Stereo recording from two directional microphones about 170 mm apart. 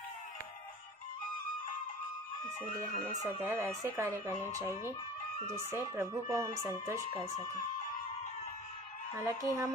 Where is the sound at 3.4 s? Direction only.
15° right (ahead or behind).